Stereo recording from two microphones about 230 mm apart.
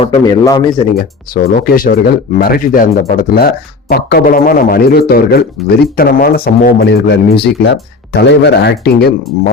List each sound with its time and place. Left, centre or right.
0.0 s a man's voice: centre
0.9 s speech: left